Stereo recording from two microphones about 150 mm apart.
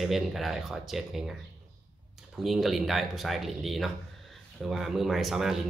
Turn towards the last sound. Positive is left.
turn(degrees=0)  # may be behind; listen again after turning